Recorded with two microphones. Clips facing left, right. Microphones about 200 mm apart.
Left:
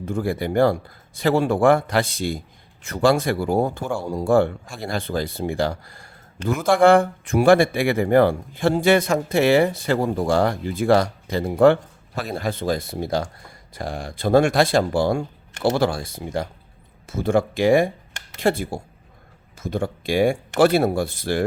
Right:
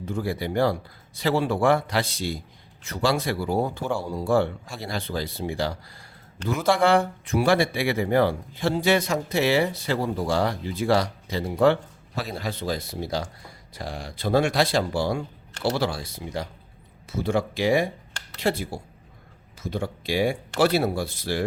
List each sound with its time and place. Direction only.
0.0 s speech: 50° left (ahead or behind)